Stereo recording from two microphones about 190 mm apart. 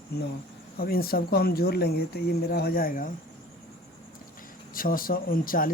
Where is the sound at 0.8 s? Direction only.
50° left (ahead or behind).